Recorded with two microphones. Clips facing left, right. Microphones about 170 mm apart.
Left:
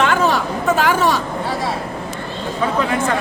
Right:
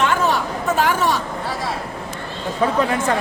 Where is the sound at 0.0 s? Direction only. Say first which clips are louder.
Left 2 dB; 90° left.